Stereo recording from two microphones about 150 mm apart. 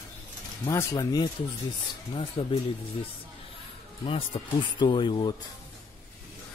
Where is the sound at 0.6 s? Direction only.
20° left (ahead or behind).